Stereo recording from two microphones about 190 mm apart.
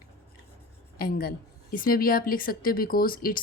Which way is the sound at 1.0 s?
50° left (ahead or behind).